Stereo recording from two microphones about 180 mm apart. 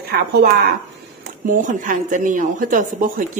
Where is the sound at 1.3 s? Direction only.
45° right (ahead or behind).